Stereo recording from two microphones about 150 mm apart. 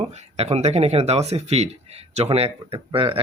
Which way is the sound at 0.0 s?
45° right (ahead or behind).